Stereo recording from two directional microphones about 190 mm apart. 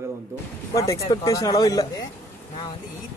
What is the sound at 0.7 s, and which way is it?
Speech, 15° left (ahead or behind).